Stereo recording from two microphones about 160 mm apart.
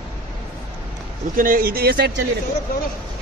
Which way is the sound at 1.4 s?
60° right (ahead or behind).